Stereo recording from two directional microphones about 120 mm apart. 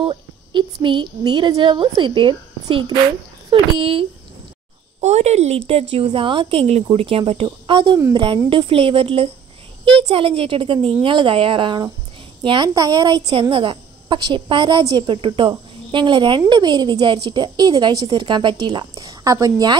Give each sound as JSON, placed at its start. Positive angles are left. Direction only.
{"t": 0.0, "sound": "a sound", "side_deg": -40}
{"t": 1.6, "sound": "a woman's voice", "side_deg": -40}
{"t": 5.0, "sound": "a woman's voice", "side_deg": -65}
{"t": 7.6, "sound": "a woman's voice", "side_deg": -45}